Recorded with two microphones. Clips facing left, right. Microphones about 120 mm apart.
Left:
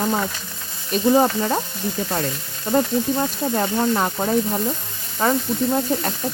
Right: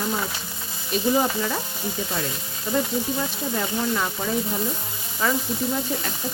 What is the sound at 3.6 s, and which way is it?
Speech, 45° left (ahead or behind).